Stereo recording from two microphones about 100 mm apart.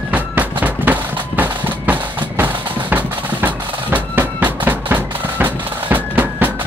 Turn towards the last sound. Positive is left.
turn(degrees=-20)  # may be behind; listen again after turning